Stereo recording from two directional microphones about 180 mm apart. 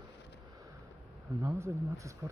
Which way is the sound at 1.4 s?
15° right (ahead or behind).